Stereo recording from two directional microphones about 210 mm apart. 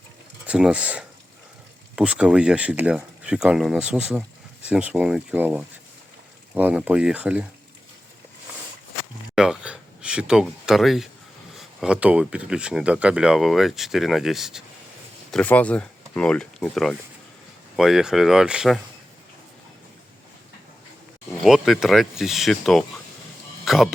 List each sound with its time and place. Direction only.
0.4 s speech: 5° right (ahead or behind)
9.3 s speech: 5° right (ahead or behind)
21.4 s speech: centre (ahead or behind)